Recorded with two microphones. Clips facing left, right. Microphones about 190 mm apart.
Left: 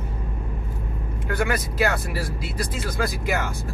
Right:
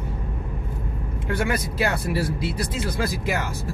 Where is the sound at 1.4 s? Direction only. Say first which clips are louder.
Left 2 dB; 25° right (ahead or behind).